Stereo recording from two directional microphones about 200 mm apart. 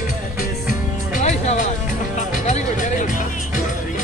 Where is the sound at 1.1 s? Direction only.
35° left (ahead or behind).